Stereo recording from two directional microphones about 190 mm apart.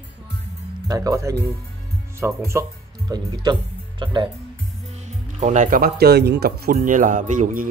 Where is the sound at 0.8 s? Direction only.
20° right (ahead or behind).